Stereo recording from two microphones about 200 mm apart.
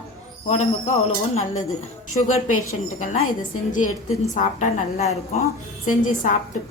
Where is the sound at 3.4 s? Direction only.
40° left (ahead or behind).